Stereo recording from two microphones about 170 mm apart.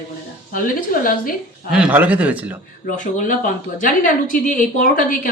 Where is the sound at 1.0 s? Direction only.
55° left (ahead or behind).